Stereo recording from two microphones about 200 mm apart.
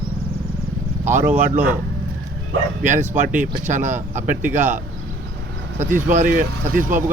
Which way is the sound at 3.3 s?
10° right (ahead or behind).